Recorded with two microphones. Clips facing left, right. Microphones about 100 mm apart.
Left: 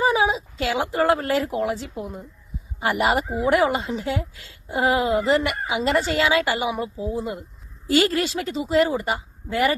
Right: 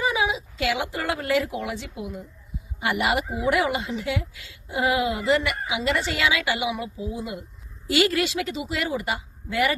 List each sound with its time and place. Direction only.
0.0 s speech: 35° left (ahead or behind)